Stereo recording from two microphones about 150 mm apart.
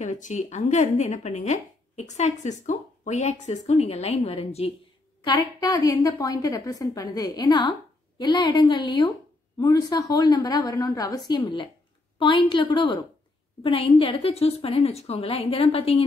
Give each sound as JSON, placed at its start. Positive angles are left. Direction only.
{"t": 0.0, "sound": "speech", "side_deg": 55}
{"t": 5.2, "sound": "a woman's voice", "side_deg": 25}